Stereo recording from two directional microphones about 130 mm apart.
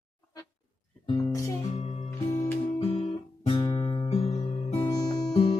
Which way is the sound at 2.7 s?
45° left (ahead or behind).